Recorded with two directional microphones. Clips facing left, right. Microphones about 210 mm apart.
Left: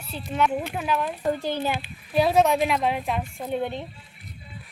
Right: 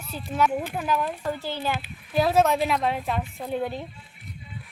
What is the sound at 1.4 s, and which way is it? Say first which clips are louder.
Speech: left 3 dB; 15° left (ahead or behind).